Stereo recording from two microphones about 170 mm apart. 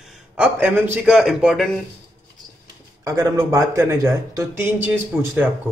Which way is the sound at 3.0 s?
20° right (ahead or behind).